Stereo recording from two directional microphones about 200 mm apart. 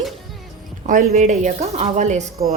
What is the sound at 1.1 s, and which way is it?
Speech, 35° right (ahead or behind).